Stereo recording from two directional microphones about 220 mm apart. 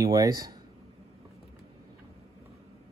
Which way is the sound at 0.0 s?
15° right (ahead or behind).